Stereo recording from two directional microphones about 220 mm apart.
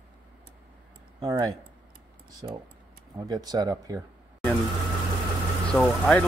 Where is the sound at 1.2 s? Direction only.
15° right (ahead or behind).